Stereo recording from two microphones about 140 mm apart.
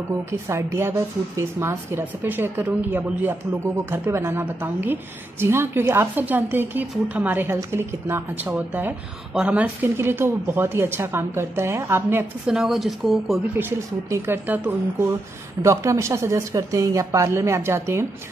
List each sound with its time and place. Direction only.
0.3 s a woman's voice: 20° right (ahead or behind)
12.5 s speech: centre (ahead or behind)
13.6 s a woman's voice: 20° right (ahead or behind)